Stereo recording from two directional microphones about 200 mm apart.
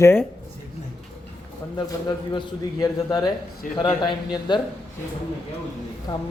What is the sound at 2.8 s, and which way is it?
Speech, 20° left (ahead or behind).